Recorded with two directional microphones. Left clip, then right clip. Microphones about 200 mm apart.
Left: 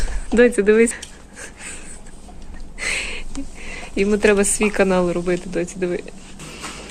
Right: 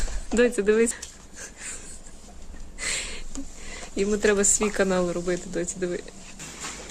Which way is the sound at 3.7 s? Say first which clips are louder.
Left 6 dB; 5° left (ahead or behind).